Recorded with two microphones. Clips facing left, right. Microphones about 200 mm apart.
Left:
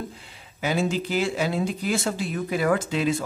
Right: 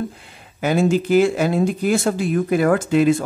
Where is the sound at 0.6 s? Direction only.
50° right (ahead or behind).